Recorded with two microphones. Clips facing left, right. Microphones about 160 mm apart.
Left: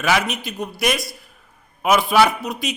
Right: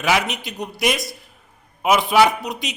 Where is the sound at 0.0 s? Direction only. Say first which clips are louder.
Even; 20° right (ahead or behind).